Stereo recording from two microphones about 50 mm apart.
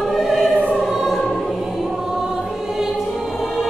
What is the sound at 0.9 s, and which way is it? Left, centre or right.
Music, centre.